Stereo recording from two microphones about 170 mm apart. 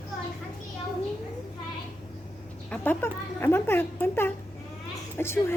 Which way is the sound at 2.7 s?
10° left (ahead or behind).